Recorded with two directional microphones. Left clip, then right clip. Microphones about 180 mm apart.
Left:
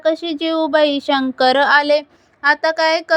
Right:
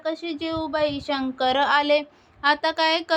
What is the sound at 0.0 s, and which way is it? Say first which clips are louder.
A woman's voice: left 10 dB; 45° left (ahead or behind).